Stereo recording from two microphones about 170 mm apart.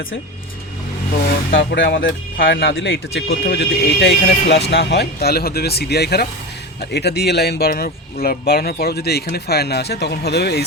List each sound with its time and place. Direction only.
1.5 s speech: 90° left; by 10.7 s 75° left (ahead or behind)